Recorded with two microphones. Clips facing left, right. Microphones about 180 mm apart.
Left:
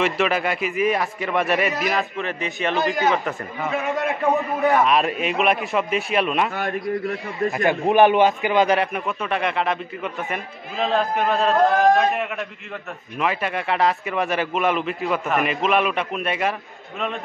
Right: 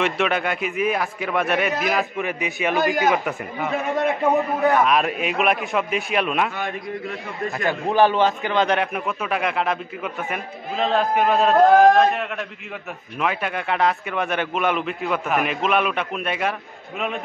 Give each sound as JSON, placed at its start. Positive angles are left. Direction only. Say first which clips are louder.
{"t": 0.0, "sound": "a man's voice", "louder": "left 1 dB", "side_deg": 0}
{"t": 4.7, "sound": "a man's voice", "louder": "even", "side_deg": 0}
{"t": 6.5, "sound": "a man's voice", "louder": "left 4 dB", "side_deg": 45}
{"t": 7.5, "sound": "a man's voice", "louder": "left 2 dB", "side_deg": 15}